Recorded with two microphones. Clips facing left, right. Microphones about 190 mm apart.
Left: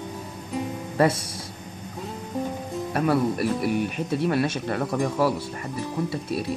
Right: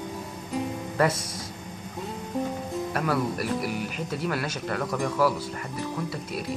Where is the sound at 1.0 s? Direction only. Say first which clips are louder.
Left 3 dB; 30° left (ahead or behind).